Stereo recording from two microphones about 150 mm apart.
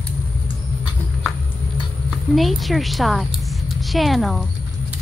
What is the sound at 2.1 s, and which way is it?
Speech, centre (ahead or behind).